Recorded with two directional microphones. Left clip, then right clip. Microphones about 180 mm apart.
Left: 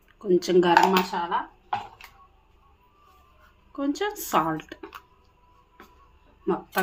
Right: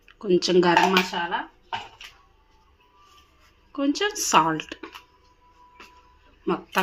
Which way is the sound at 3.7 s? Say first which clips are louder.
Right 3 dB; 15° right (ahead or behind).